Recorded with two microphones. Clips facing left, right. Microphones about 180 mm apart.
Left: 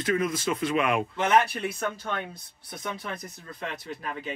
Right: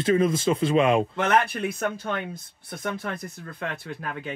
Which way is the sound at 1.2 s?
55° right (ahead or behind).